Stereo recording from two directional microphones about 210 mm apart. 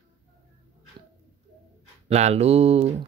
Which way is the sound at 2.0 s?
30° right (ahead or behind).